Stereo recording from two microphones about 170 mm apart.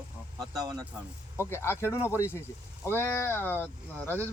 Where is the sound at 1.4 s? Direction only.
15° left (ahead or behind).